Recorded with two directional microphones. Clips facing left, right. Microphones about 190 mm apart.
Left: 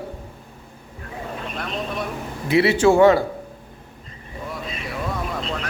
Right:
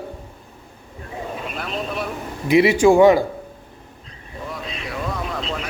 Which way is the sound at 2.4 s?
15° right (ahead or behind).